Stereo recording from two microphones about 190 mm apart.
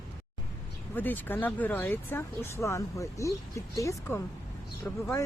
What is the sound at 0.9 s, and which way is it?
Speech, 10° left (ahead or behind).